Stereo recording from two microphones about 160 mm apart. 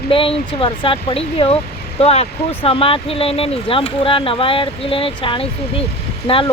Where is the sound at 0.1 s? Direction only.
35° left (ahead or behind).